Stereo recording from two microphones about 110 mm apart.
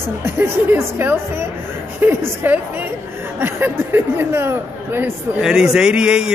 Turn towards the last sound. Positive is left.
turn(degrees=-5)  # may be behind; listen again after turning